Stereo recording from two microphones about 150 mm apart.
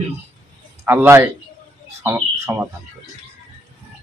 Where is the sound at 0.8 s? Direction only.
15° right (ahead or behind).